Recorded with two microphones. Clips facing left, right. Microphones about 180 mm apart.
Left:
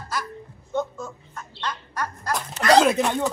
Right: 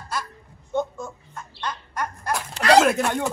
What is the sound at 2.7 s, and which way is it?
Speech, centre (ahead or behind).